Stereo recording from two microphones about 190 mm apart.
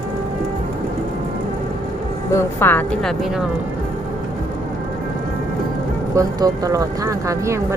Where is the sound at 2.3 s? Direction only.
15° left (ahead or behind).